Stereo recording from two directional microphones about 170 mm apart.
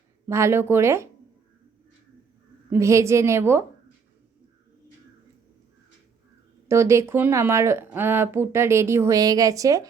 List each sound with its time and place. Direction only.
0.3 s speech: 15° right (ahead or behind)
2.6 s speech: 15° right (ahead or behind)
6.7 s speech: 15° right (ahead or behind)